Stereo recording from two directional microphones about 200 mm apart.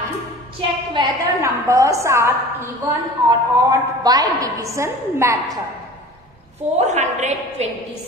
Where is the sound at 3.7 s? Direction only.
20° right (ahead or behind).